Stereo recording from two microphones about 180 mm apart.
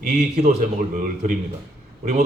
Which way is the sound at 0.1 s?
40° right (ahead or behind).